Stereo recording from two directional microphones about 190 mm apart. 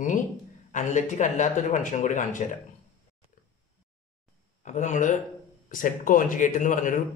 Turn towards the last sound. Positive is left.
turn(degrees=45)  # may be behind; listen again after turning